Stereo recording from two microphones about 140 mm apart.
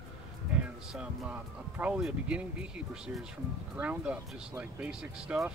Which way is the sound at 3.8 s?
10° right (ahead or behind).